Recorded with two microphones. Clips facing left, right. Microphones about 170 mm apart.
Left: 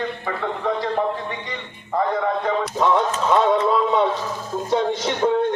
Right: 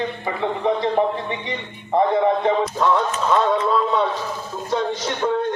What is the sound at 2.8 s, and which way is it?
A man's voice, 15° left (ahead or behind).